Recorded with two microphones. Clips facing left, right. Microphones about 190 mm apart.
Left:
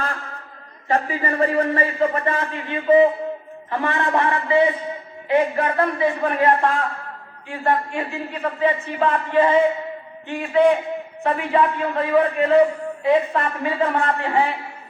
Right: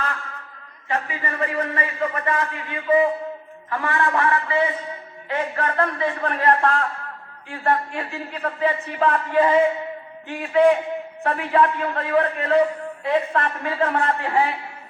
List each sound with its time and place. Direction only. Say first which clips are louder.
0.9 s a man's voice: left 5 dB; 35° left (ahead or behind); by 6.3 s 15° left (ahead or behind)
6.4 s a man's voice: even; 5° left (ahead or behind)